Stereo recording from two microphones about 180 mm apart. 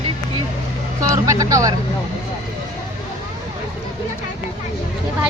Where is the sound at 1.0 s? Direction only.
20° right (ahead or behind).